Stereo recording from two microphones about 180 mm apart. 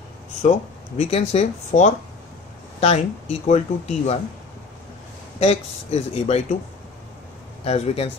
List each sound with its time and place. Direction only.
0.4 s speech: 35° left (ahead or behind)
5.4 s speech: 35° left (ahead or behind)
7.6 s speech: 35° left (ahead or behind)